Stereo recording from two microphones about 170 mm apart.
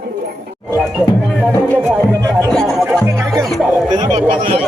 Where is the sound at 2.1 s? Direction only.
20° right (ahead or behind).